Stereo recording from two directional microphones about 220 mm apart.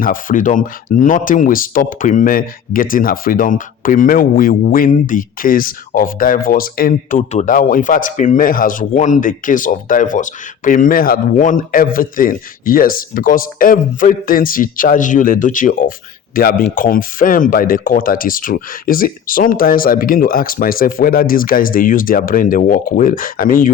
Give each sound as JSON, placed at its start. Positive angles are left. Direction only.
{"t": 0.0, "sound": "speech", "side_deg": 40}